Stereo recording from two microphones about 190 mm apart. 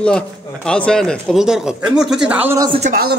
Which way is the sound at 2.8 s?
50° right (ahead or behind).